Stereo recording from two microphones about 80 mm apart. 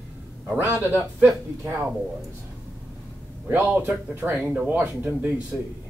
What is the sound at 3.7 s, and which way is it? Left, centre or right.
A man's voice, right.